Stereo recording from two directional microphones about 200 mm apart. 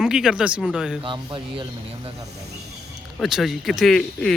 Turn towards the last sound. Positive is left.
turn(degrees=5)  # may be behind; listen again after turning